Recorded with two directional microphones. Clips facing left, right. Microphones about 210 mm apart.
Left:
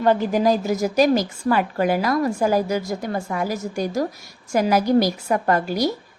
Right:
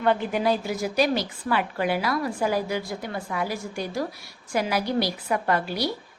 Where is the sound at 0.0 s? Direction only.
40° left (ahead or behind).